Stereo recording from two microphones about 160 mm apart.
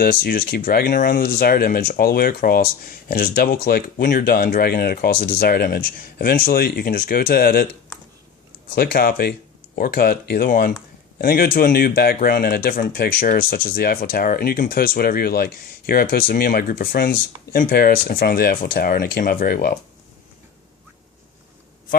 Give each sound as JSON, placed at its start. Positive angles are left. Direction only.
{"t": 0.0, "sound": "speech", "side_deg": 65}
{"t": 8.7, "sound": "speech", "side_deg": 65}